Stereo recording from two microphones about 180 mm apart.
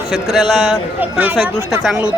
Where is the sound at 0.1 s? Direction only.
Centre (ahead or behind).